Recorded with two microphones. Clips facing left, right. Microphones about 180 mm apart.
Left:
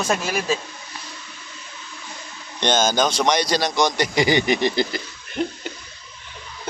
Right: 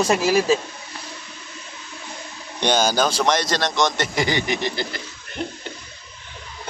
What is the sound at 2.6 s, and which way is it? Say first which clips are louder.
A man's voice: even; 10° right (ahead or behind).